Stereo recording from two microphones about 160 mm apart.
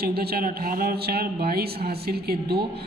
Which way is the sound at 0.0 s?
75° right (ahead or behind).